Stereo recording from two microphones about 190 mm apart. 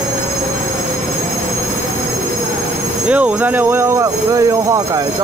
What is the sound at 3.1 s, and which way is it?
Speech, 5° right (ahead or behind).